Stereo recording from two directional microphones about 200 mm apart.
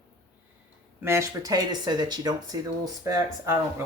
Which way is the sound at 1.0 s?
15° right (ahead or behind).